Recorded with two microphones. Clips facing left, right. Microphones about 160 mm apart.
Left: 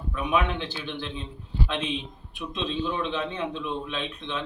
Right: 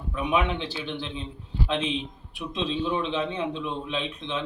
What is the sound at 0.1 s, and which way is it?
A man's voice, 20° right (ahead or behind).